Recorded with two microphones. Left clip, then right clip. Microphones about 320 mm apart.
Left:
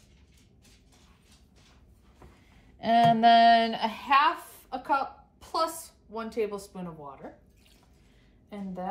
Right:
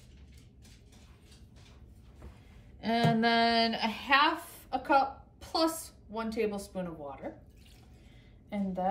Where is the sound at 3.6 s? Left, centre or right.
Centre.